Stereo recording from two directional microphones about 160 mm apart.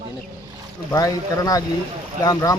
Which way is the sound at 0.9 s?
20° left (ahead or behind).